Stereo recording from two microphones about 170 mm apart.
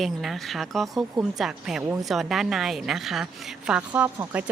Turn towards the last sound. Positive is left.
turn(degrees=-10)  # may be behind; listen again after turning